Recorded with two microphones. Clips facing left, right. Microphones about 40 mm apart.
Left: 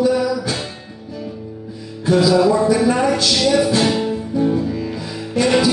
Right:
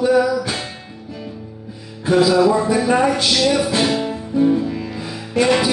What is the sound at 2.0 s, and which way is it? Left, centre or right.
Music, centre.